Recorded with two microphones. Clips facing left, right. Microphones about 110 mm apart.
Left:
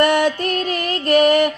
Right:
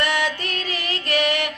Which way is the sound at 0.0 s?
50° left (ahead or behind).